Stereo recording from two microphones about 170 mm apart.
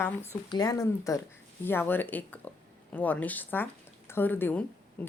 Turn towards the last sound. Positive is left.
turn(degrees=10)  # may be behind; listen again after turning